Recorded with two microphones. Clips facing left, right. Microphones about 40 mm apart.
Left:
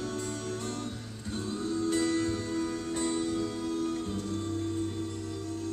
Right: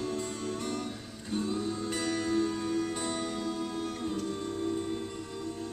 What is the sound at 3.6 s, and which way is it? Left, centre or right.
Music, right.